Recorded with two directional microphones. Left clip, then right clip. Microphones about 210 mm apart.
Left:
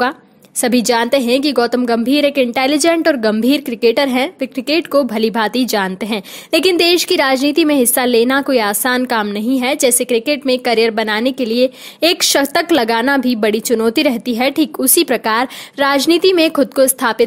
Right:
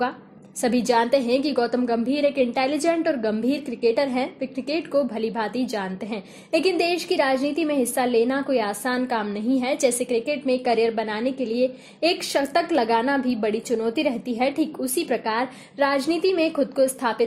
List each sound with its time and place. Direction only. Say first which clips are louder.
0.6 s a woman's voice: left 6 dB; 35° left (ahead or behind)